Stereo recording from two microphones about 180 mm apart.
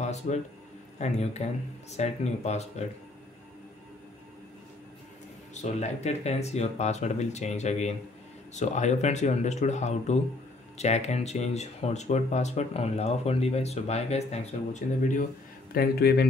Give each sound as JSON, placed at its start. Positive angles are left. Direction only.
{"t": 0.0, "sound": "speech", "side_deg": 40}
{"t": 5.5, "sound": "speech", "side_deg": 40}
{"t": 15.7, "sound": "speech", "side_deg": 60}